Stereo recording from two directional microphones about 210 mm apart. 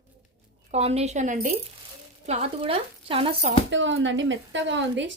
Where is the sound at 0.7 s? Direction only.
30° right (ahead or behind).